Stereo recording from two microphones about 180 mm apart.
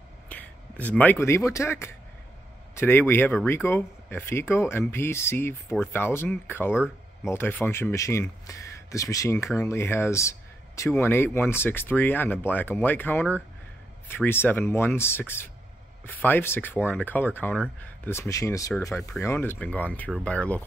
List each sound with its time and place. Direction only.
0.3 s speech: 10° left (ahead or behind)